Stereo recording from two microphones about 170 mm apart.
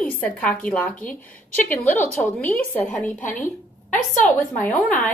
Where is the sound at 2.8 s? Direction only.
50° left (ahead or behind).